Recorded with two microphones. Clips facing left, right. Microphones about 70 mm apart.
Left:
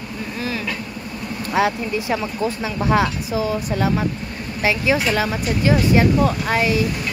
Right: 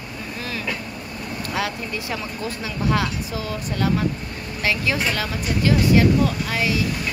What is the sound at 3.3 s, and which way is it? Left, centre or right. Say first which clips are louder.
Speech: left 6 dB; centre.